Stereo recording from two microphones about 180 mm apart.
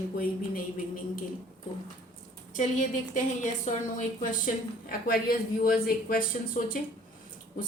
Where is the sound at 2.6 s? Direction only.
45° left (ahead or behind).